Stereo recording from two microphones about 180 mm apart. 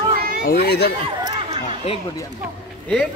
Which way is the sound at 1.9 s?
35° left (ahead or behind).